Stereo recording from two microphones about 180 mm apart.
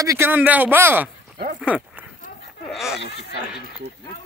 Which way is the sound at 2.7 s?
Centre (ahead or behind).